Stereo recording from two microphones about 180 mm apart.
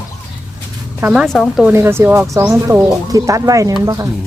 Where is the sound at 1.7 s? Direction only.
15° right (ahead or behind).